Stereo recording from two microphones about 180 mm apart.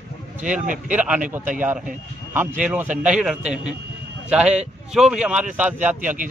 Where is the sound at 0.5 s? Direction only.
45° right (ahead or behind).